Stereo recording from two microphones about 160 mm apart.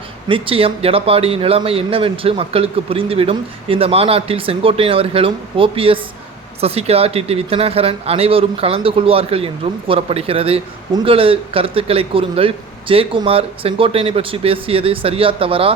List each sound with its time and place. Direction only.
0.3 s a man's voice: 35° right (ahead or behind)